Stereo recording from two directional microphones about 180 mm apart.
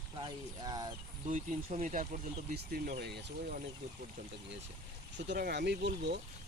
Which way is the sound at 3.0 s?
65° right (ahead or behind).